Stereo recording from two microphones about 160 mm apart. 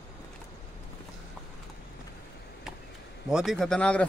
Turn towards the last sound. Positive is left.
turn(degrees=5)  # may be behind; listen again after turning